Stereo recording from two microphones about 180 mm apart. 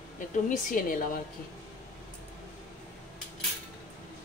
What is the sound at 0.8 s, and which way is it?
Speech, 50° left (ahead or behind).